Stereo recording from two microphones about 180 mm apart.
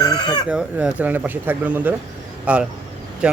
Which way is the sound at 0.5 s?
5° right (ahead or behind).